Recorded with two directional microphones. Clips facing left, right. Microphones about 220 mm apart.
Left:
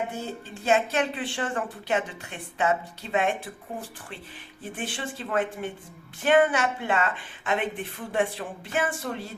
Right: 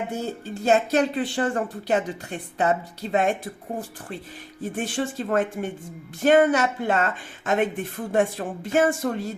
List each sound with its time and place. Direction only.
0.1 s speech: 40° right (ahead or behind)